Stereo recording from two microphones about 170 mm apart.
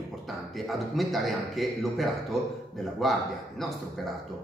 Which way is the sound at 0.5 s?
Centre (ahead or behind).